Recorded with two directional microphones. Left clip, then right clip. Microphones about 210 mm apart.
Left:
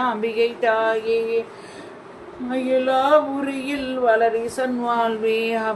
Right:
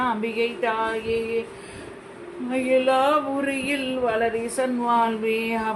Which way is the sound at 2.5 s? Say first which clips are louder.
Even; 30° left (ahead or behind).